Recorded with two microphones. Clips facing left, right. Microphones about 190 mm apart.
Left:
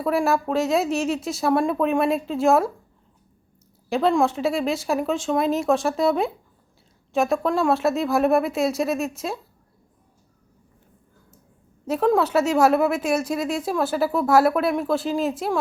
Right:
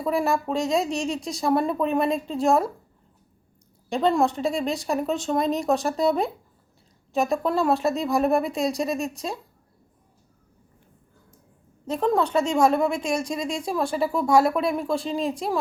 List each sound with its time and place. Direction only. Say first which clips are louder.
0.0 s a woman's voice: left 2 dB; centre (ahead or behind)
3.8 s a woman's voice: left 2 dB; centre (ahead or behind)
11.9 s a woman's voice: left 3 dB; 5° left (ahead or behind)